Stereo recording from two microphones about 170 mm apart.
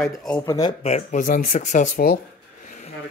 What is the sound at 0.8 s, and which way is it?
Speech, 40° left (ahead or behind).